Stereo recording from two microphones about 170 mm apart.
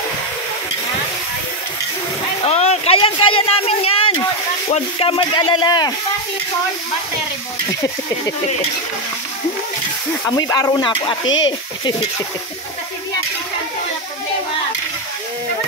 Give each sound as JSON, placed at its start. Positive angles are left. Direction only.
{"t": 2.4, "sound": "a sound", "side_deg": 40}
{"t": 4.6, "sound": "speech", "side_deg": 35}
{"t": 10.3, "sound": "speech", "side_deg": 20}